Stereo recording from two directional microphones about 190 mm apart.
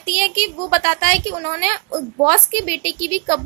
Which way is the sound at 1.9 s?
15° right (ahead or behind).